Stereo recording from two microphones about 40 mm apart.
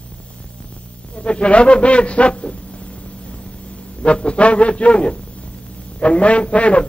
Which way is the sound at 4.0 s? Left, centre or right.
Left.